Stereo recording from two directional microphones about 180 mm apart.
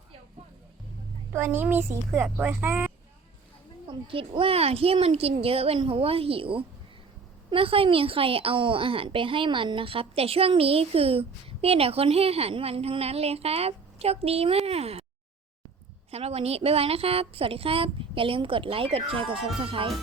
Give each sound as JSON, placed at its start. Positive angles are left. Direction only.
{"t": 1.3, "sound": "speech", "side_deg": -10}
{"t": 4.0, "sound": "a woman's voice", "side_deg": -30}
{"t": 16.1, "sound": "a woman's voice", "side_deg": -35}
{"t": 19.5, "sound": "music", "side_deg": -30}